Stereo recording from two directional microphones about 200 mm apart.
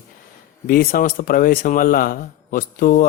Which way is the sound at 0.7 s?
45° left (ahead or behind).